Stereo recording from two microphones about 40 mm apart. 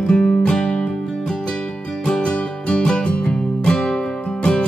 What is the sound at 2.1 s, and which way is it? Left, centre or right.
Music, left.